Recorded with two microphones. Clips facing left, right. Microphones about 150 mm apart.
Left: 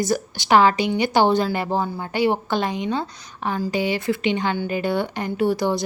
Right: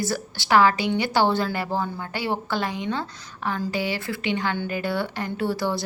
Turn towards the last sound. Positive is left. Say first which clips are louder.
# left 5 dB
turn(degrees=15)  # may be behind; listen again after turning